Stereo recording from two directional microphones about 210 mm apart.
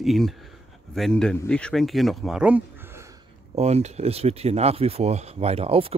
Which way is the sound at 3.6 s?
30° right (ahead or behind).